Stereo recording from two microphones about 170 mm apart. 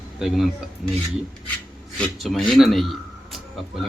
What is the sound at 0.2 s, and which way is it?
Speech, 5° right (ahead or behind).